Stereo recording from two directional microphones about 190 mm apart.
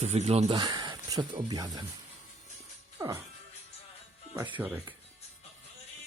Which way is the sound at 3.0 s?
15° right (ahead or behind).